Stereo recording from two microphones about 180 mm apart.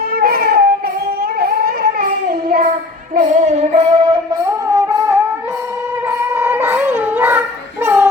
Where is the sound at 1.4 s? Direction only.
55° right (ahead or behind).